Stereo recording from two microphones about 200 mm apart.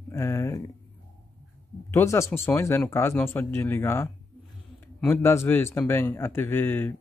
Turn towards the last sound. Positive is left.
turn(degrees=10)  # may be behind; listen again after turning